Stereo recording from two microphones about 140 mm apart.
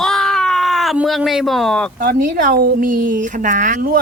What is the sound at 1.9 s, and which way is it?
Speech, 90° right.